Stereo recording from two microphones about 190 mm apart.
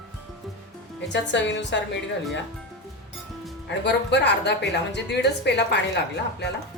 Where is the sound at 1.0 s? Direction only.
70° left (ahead or behind).